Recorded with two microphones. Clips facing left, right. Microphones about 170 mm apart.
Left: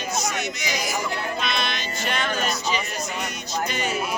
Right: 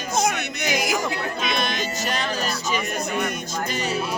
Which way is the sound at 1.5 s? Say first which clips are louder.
Right 3 dB; 45° right (ahead or behind).